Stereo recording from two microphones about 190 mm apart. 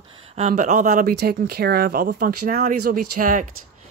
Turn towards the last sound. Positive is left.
turn(degrees=-45)  # may be behind; listen again after turning